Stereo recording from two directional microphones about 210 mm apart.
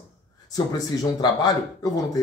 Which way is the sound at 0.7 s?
20° left (ahead or behind).